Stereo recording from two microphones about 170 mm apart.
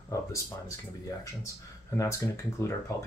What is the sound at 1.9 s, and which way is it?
Speech, 15° left (ahead or behind).